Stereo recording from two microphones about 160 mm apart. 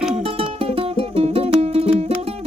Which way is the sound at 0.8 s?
35° right (ahead or behind).